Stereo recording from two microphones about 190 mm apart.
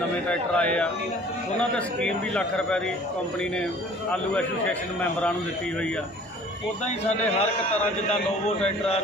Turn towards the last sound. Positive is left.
turn(degrees=30)  # may be behind; listen again after turning